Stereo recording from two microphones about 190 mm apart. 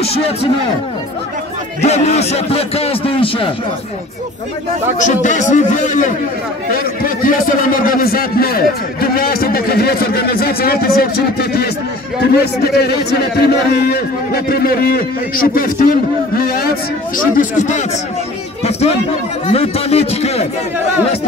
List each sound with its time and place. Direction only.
0.0 s a man's voice: 30° left (ahead or behind)
1.8 s a man's voice: 35° left (ahead or behind)
4.9 s a man's voice: 40° left (ahead or behind)
17.4 s a man's voice: 40° left (ahead or behind)
18.6 s a sound: 35° left (ahead or behind)
19.4 s a man's voice: 30° left (ahead or behind)